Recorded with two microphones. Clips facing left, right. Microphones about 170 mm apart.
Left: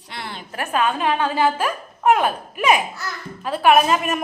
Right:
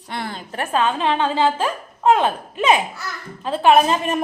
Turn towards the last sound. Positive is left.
turn(degrees=-30)  # may be behind; listen again after turning